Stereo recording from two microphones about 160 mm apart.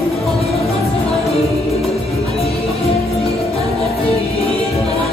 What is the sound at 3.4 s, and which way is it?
Music, centre (ahead or behind).